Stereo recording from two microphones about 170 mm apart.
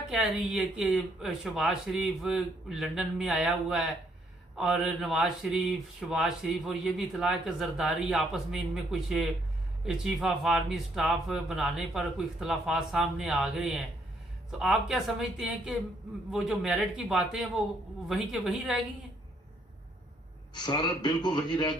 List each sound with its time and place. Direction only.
0.1 s speech: centre (ahead or behind)
20.7 s speech: 25° left (ahead or behind)